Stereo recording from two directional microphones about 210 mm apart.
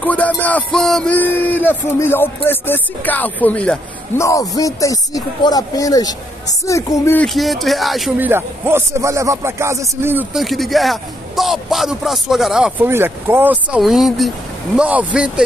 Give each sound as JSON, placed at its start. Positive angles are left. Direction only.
{"t": 0.0, "sound": "music", "side_deg": 5}
{"t": 4.3, "sound": "music", "side_deg": 15}
{"t": 7.3, "sound": "speech", "side_deg": 0}
{"t": 8.3, "sound": "speech", "side_deg": -10}